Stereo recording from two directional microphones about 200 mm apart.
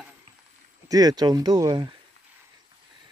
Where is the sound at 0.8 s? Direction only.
20° right (ahead or behind).